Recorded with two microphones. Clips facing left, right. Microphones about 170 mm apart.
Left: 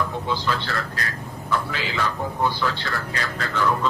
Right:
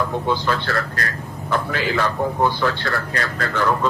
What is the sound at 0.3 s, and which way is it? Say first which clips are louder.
A man's voice: right 4 dB; 55° right (ahead or behind).